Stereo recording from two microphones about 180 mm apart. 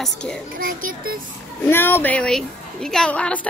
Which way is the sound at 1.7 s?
10° left (ahead or behind).